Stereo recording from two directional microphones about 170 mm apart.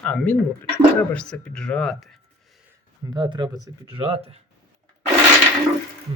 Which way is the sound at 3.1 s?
25° right (ahead or behind).